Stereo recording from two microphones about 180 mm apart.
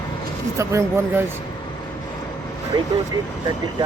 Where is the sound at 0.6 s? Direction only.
15° right (ahead or behind).